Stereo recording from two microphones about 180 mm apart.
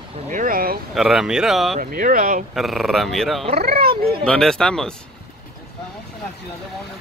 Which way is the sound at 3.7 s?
55° right (ahead or behind).